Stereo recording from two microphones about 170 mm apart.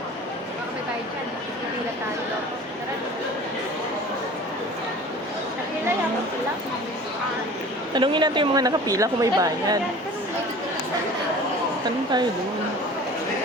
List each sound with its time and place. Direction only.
7.9 s a woman's voice: 25° right (ahead or behind)